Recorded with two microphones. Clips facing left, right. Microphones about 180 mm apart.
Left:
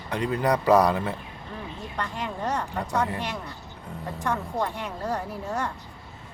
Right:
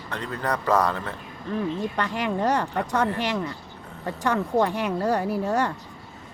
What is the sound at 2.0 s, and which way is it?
Speech, 75° right (ahead or behind).